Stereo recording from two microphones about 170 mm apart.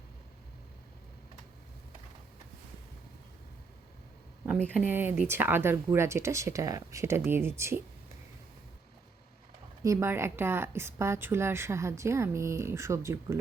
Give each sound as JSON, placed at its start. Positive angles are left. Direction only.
{"t": 4.4, "sound": "a woman's voice", "side_deg": 0}
{"t": 9.8, "sound": "a woman's voice", "side_deg": -15}